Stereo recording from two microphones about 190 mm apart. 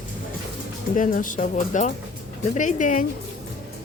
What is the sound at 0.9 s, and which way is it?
Speech, 45° left (ahead or behind).